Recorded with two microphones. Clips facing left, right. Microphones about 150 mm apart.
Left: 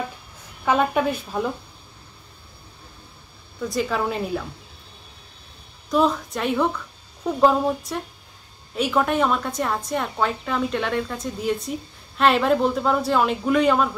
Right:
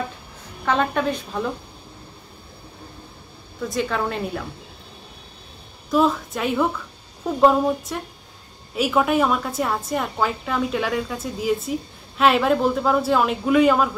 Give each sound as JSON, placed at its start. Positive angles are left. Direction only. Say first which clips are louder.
{"t": 0.7, "sound": "a woman's voice", "louder": "left 1 dB", "side_deg": 10}
{"t": 3.6, "sound": "a woman's voice", "louder": "even", "side_deg": 0}
{"t": 5.9, "sound": "a woman's voice", "louder": "right 1 dB", "side_deg": 0}